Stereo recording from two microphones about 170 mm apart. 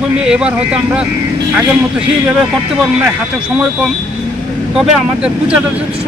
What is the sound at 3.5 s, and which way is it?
Speech, 5° right (ahead or behind).